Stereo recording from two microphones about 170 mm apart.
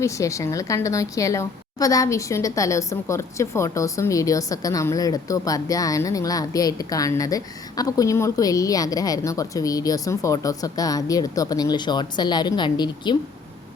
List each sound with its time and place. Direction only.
0.0 s a woman's voice: 20° left (ahead or behind)